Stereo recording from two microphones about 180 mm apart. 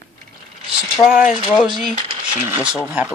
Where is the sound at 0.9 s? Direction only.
5° right (ahead or behind).